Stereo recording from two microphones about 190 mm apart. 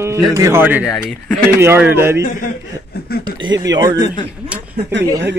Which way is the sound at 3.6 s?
20° right (ahead or behind).